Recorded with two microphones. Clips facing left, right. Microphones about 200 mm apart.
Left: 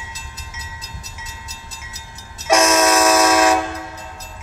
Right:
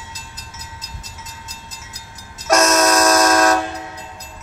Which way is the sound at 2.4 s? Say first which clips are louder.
Even; 10° left (ahead or behind).